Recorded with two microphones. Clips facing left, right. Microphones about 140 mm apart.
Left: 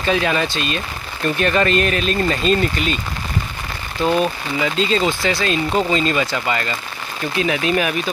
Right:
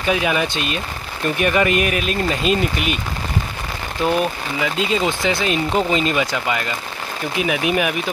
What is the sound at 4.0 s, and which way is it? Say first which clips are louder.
Speech: left 1 dB; 10° right (ahead or behind).